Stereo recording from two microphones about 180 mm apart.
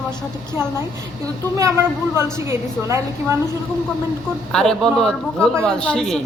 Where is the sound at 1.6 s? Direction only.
15° right (ahead or behind).